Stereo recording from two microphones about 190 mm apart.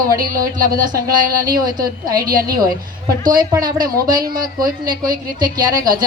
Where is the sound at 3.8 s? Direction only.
20° right (ahead or behind).